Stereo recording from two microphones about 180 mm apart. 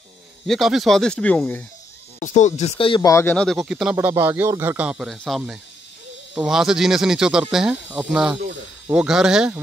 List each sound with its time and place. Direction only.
0.5 s speech: centre (ahead or behind)
2.2 s speech: 40° left (ahead or behind); by 3.9 s 5° right (ahead or behind)
3.9 s speech: 15° right (ahead or behind)